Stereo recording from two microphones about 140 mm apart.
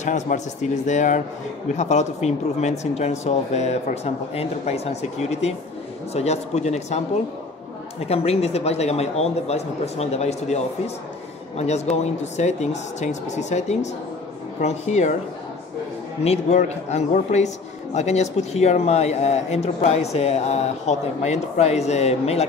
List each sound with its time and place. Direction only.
0.0 s speech: 60° left (ahead or behind)
6.1 s speech: 50° left (ahead or behind)
8.1 s speech: 45° left (ahead or behind)
16.3 s speech: 50° left (ahead or behind)